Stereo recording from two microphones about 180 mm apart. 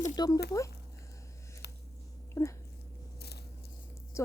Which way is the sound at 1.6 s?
65° left (ahead or behind).